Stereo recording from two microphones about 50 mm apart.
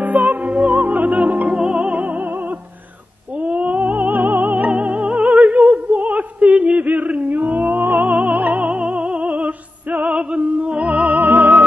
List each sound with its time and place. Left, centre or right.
0.0 s music: right
3.3 s a sound: right
3.8 s music: right
5.7 s a sound: right
8.6 s music: right
9.8 s music: right